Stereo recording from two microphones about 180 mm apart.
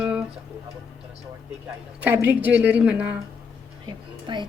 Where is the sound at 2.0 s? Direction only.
10° right (ahead or behind).